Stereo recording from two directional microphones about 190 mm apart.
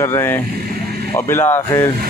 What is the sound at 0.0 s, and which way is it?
Speech, 15° left (ahead or behind).